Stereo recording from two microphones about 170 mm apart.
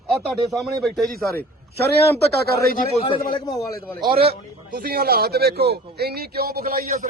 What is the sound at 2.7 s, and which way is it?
Speech, 40° left (ahead or behind).